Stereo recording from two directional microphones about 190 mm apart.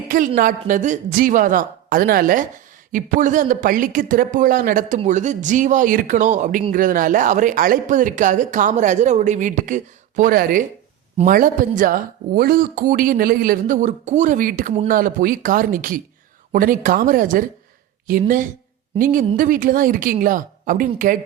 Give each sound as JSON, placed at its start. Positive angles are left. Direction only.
{"t": 0.1, "sound": "speech", "side_deg": -45}